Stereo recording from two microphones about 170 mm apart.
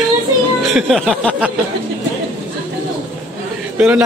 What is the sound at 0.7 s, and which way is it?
Speech, centre (ahead or behind).